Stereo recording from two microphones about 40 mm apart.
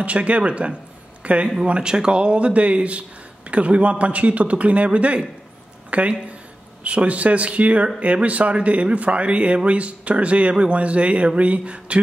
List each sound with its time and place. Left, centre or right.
0.0 s a man's voice: right
1.7 s a man's voice: right